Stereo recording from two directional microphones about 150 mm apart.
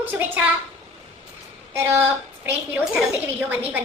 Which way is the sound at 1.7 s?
15° right (ahead or behind).